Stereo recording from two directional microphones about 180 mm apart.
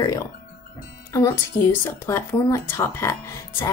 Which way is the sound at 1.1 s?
15° left (ahead or behind).